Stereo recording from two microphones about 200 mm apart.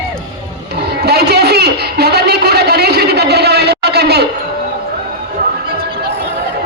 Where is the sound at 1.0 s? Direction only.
55° right (ahead or behind).